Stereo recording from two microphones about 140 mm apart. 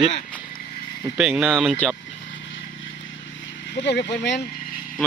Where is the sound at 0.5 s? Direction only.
90° left.